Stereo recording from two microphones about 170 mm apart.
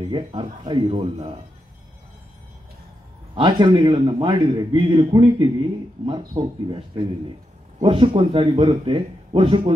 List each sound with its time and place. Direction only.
0.1 s speech: 30° right (ahead or behind)
3.3 s a man's voice: 30° right (ahead or behind)